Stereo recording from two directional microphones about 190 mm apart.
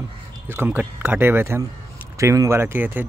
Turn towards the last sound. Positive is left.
turn(degrees=-10)  # may be behind; listen again after turning